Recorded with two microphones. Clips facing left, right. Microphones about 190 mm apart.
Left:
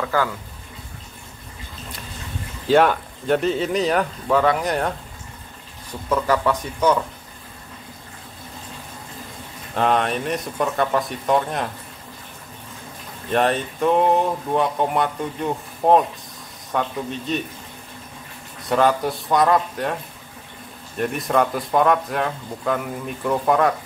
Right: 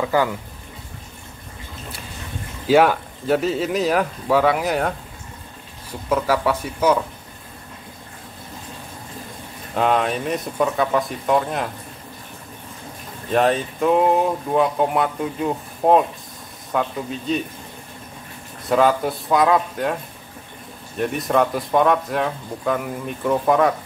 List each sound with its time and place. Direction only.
0.0 s speech: 15° right (ahead or behind)
2.7 s speech: 5° right (ahead or behind)
6.0 s speech: 5° right (ahead or behind)
9.8 s speech: centre (ahead or behind)
13.3 s speech: centre (ahead or behind)
18.7 s speech: centre (ahead or behind)
21.0 s speech: centre (ahead or behind)